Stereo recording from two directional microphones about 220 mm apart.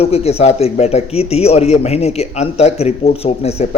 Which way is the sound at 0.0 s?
30° left (ahead or behind).